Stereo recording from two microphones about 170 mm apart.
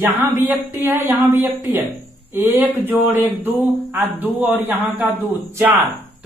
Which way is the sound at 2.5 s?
10° right (ahead or behind).